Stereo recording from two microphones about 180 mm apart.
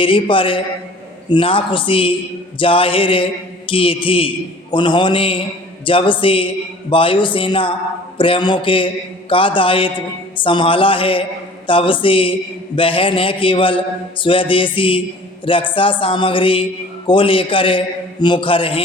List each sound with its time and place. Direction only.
0.0 s a man's voice: 30° left (ahead or behind)